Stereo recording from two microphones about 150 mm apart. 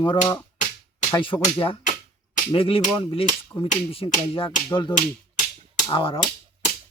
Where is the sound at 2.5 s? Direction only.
40° left (ahead or behind).